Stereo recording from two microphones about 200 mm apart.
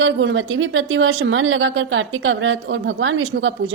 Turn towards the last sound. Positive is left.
turn(degrees=-75)  # may be behind; listen again after turning